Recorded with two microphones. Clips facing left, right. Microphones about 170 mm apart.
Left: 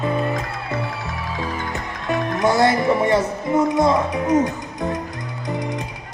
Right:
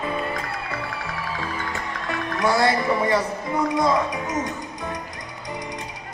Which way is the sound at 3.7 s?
25° left (ahead or behind).